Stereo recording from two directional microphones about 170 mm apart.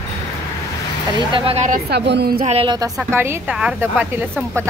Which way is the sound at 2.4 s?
35° right (ahead or behind).